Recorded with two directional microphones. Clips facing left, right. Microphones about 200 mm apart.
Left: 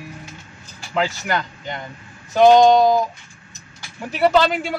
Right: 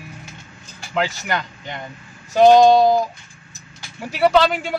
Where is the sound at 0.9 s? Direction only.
Centre (ahead or behind).